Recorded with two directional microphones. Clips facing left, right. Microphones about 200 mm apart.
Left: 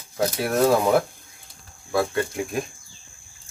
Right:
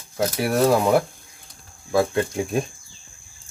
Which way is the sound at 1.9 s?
20° right (ahead or behind).